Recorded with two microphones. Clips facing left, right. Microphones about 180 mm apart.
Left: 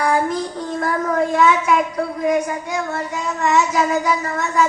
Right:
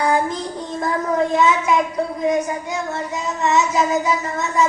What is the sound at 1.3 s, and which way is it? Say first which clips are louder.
A child's voice: left 2 dB; 25° right (ahead or behind).